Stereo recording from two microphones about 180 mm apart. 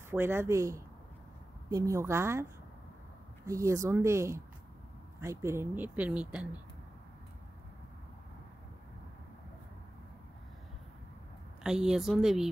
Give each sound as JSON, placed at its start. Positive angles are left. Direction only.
{"t": 0.1, "sound": "speech", "side_deg": -15}
{"t": 3.4, "sound": "speech", "side_deg": -15}
{"t": 11.6, "sound": "speech", "side_deg": -5}